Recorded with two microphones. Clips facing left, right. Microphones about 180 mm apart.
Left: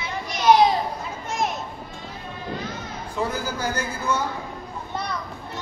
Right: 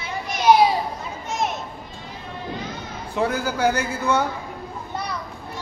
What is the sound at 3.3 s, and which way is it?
Speech, 65° right (ahead or behind).